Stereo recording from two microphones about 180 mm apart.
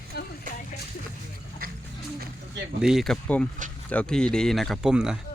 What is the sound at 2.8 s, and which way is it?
Speech, centre (ahead or behind).